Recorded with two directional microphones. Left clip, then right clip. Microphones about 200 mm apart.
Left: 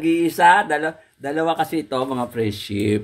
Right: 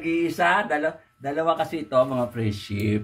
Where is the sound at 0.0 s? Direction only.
60° left (ahead or behind).